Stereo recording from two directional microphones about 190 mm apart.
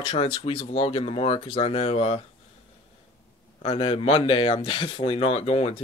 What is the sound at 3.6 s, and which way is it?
Speech, 30° left (ahead or behind).